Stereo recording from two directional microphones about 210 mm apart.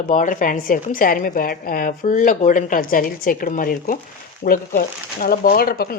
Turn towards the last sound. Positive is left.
turn(degrees=45)  # may be behind; listen again after turning